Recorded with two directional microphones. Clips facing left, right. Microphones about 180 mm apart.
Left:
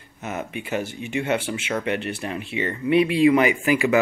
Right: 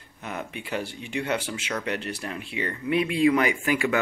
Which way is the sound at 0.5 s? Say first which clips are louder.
Left 4 dB; 5° left (ahead or behind).